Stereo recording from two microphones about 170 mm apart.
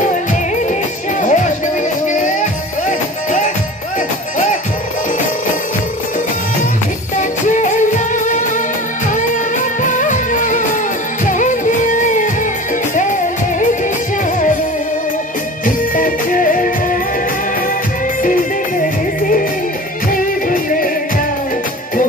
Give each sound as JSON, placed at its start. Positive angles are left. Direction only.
{"t": 1.2, "sound": "music", "side_deg": 45}
{"t": 7.2, "sound": "music", "side_deg": 45}
{"t": 9.8, "sound": "music", "side_deg": 50}
{"t": 15.6, "sound": "music", "side_deg": 50}
{"t": 20.1, "sound": "music", "side_deg": 50}